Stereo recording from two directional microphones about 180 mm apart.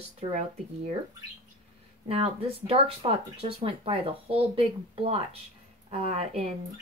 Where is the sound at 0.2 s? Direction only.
40° right (ahead or behind).